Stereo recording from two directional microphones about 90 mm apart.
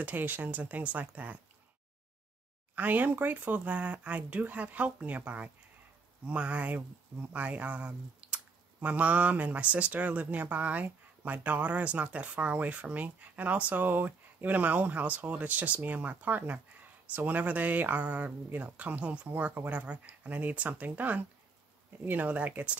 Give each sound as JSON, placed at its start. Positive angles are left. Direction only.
{"t": 0.0, "sound": "speech", "side_deg": -20}
{"t": 2.7, "sound": "speech", "side_deg": -20}